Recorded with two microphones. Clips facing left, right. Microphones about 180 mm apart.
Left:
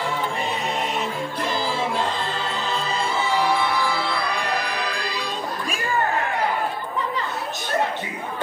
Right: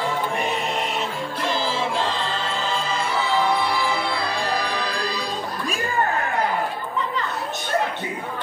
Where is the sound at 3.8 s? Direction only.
20° right (ahead or behind); by 5.3 s 35° right (ahead or behind).